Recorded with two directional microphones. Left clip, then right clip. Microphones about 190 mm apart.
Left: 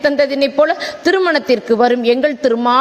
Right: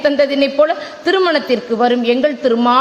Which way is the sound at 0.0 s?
35° left (ahead or behind).